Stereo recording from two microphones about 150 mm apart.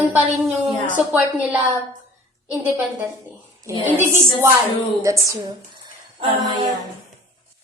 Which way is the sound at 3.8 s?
15° right (ahead or behind).